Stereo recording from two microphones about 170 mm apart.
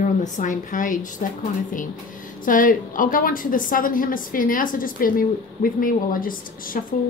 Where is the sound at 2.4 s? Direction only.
55° left (ahead or behind).